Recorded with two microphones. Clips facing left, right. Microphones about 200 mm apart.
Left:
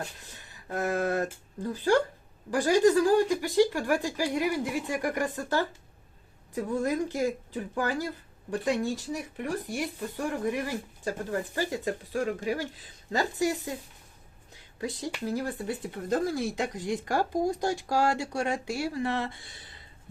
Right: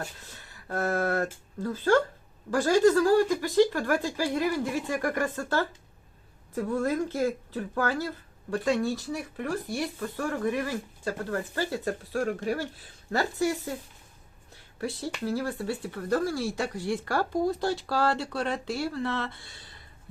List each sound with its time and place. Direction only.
0.2 s speech: 15° left (ahead or behind)
14.8 s speech: 15° left (ahead or behind)